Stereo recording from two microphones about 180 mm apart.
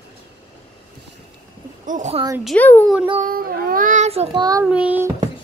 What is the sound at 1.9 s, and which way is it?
Speech, 40° right (ahead or behind).